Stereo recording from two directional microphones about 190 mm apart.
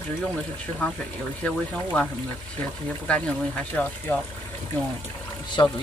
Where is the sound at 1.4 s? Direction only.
5° left (ahead or behind).